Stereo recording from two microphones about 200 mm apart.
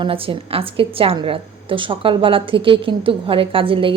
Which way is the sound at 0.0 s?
25° right (ahead or behind).